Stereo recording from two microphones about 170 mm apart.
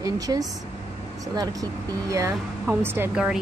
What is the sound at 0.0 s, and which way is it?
Speech, 20° right (ahead or behind).